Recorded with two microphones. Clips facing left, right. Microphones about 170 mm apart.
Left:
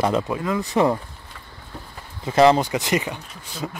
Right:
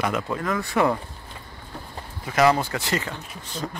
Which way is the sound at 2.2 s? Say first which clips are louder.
Left 4 dB; 25° left (ahead or behind).